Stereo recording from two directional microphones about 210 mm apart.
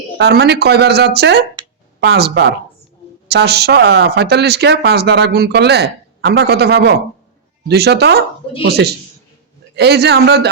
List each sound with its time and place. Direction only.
0.2 s speech: 50° right (ahead or behind)